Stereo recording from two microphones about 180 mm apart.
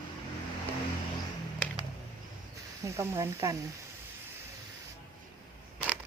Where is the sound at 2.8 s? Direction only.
15° right (ahead or behind).